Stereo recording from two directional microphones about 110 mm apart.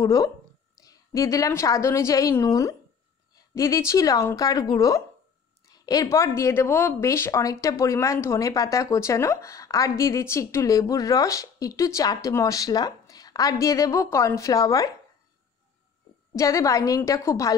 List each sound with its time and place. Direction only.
0.0 s a woman's voice: 30° left (ahead or behind)
16.3 s speech: 30° left (ahead or behind)